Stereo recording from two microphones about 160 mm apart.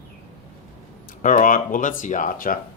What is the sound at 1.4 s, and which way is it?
Speech, 55° left (ahead or behind).